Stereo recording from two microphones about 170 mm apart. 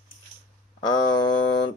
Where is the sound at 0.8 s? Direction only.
25° left (ahead or behind).